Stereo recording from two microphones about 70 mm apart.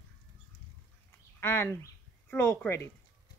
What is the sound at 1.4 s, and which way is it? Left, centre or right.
Speech, left.